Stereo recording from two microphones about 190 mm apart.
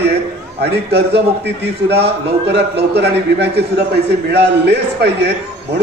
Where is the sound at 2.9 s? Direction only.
60° right (ahead or behind).